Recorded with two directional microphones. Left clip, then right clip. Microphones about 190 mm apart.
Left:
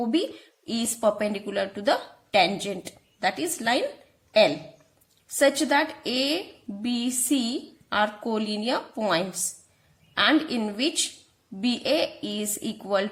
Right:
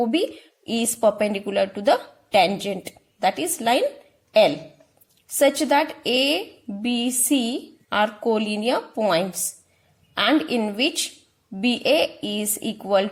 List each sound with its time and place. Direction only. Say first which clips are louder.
0.0 s a woman's voice: right 4 dB; 20° right (ahead or behind)